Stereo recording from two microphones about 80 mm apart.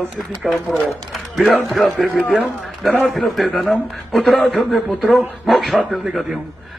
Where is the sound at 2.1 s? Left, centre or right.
Centre.